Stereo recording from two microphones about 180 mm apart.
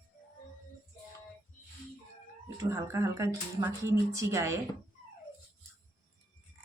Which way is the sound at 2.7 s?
15° right (ahead or behind).